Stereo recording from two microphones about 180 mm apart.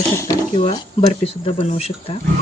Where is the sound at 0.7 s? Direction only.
30° left (ahead or behind).